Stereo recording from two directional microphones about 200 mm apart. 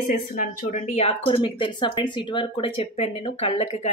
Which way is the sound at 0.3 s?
40° left (ahead or behind).